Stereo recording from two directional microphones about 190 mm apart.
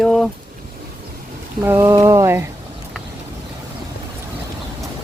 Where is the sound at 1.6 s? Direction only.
15° right (ahead or behind).